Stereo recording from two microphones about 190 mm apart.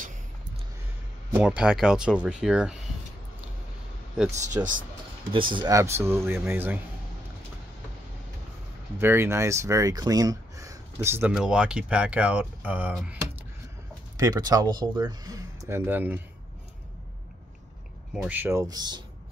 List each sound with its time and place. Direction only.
1.4 s speech: 5° right (ahead or behind)
4.6 s speech: 15° right (ahead or behind)
5.3 s speech: 25° right (ahead or behind); by 6.8 s 10° right (ahead or behind)
9.0 s speech: 10° right (ahead or behind)
14.1 s speech: 20° right (ahead or behind)
18.1 s speech: 5° right (ahead or behind)